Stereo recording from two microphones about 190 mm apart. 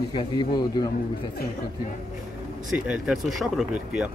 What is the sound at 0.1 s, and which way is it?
Speech, 20° left (ahead or behind).